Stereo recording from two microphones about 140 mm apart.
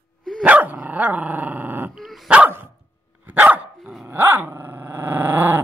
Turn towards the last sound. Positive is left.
turn(degrees=-15)  # may be behind; listen again after turning